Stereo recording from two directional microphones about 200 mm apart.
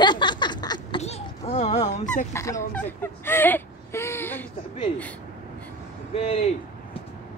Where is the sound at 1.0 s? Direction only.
30° left (ahead or behind).